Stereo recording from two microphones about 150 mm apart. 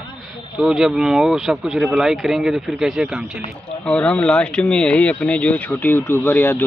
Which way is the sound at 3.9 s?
5° left (ahead or behind).